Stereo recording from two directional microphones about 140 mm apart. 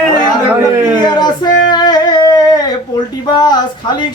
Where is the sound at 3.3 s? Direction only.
30° left (ahead or behind).